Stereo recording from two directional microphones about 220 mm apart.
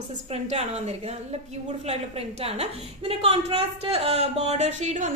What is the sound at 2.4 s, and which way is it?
A woman's voice, 25° right (ahead or behind).